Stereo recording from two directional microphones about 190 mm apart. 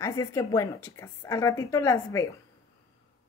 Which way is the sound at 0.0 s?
15° left (ahead or behind).